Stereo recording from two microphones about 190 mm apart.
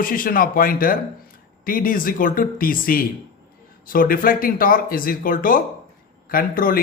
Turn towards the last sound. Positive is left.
turn(degrees=50)  # may be behind; listen again after turning